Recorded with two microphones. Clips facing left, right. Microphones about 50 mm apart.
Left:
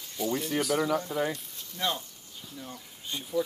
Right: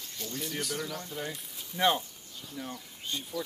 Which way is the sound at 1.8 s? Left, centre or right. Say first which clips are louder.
Right 5 dB; right.